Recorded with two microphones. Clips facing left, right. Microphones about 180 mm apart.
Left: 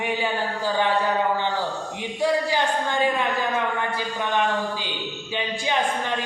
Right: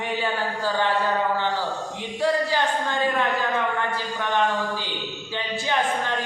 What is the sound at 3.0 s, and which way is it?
Speech, 15° left (ahead or behind).